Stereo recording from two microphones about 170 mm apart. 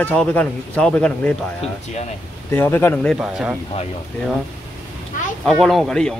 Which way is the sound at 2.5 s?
10° left (ahead or behind).